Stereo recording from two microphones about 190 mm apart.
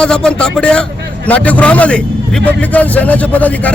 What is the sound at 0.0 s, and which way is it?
Speech, 5° left (ahead or behind).